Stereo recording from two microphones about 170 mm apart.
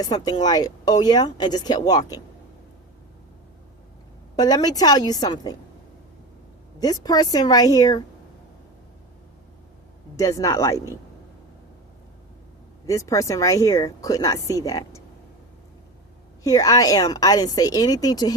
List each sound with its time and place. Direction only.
0.0 s speech: 25° left (ahead or behind)
4.4 s speech: 25° left (ahead or behind)
6.7 s speech: 20° left (ahead or behind)
10.2 s speech: 20° left (ahead or behind)
12.8 s speech: 15° left (ahead or behind)
16.4 s speech: 20° left (ahead or behind)